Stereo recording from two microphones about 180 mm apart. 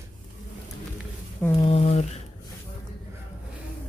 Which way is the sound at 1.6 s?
35° left (ahead or behind).